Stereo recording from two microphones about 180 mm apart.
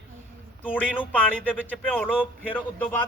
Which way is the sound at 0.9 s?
5° left (ahead or behind).